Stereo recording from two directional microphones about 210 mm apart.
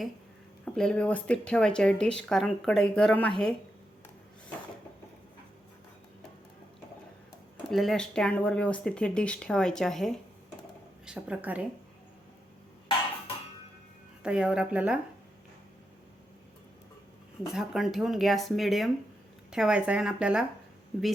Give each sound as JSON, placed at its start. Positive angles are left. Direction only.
{"t": 0.6, "sound": "speech", "side_deg": 5}
{"t": 7.7, "sound": "a woman's voice", "side_deg": 0}
{"t": 14.2, "sound": "speech", "side_deg": -5}
{"t": 17.5, "sound": "speech", "side_deg": 0}